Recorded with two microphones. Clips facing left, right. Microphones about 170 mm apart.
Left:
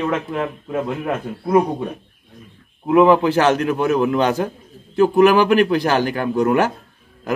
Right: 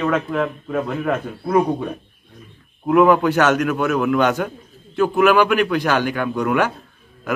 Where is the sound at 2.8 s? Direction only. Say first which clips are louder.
Left 1 dB; 20° left (ahead or behind); by 6.7 s 40° left (ahead or behind).